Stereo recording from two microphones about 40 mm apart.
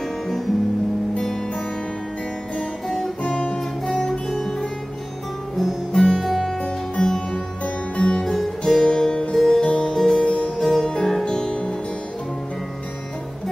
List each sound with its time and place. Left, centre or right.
3.3 s guitar: left
4.3 s music: centre
5.6 s music: centre
6.6 s music: centre
10.2 s music: left
10.6 s music: centre